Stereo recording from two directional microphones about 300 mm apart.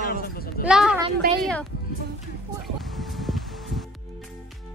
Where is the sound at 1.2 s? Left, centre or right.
Right.